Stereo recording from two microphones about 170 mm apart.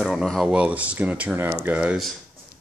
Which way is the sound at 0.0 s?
Centre (ahead or behind).